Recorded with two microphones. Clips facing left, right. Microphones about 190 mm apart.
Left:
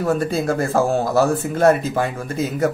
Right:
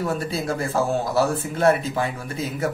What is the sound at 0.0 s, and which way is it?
A man's voice, 45° left (ahead or behind).